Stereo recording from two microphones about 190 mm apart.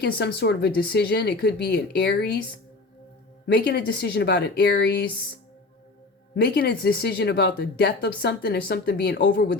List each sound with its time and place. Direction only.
0.0 s speech: 55° left (ahead or behind)
3.4 s speech: 55° left (ahead or behind)
6.3 s speech: 60° left (ahead or behind)